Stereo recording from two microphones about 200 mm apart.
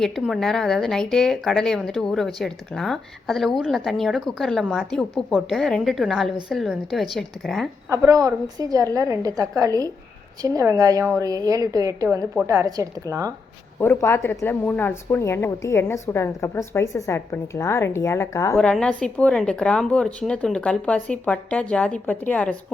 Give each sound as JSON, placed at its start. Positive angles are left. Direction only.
{"t": 0.0, "sound": "speech", "side_deg": 0}
{"t": 7.9, "sound": "a woman's voice", "side_deg": -15}
{"t": 13.7, "sound": "a woman's voice", "side_deg": 10}